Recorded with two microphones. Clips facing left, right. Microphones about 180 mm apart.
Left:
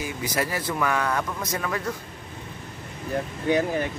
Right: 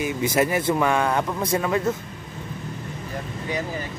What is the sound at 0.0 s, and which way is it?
Speech, 25° right (ahead or behind).